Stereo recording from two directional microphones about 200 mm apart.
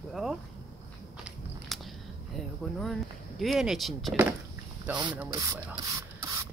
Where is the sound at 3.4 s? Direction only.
Centre (ahead or behind).